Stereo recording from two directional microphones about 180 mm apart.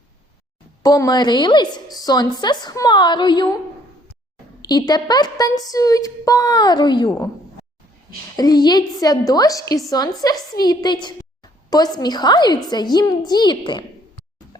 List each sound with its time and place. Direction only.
0.8 s a woman's voice: 20° left (ahead or behind)
4.6 s a woman's voice: 20° left (ahead or behind)
8.4 s a woman's voice: 20° left (ahead or behind)